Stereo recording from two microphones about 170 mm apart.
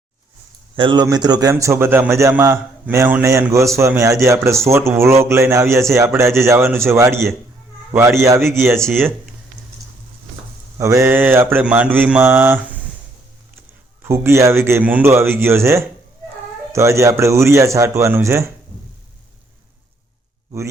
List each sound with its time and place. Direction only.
0.8 s a man's voice: 25° right (ahead or behind)
10.8 s a man's voice: 15° right (ahead or behind)
14.0 s a man's voice: 15° right (ahead or behind)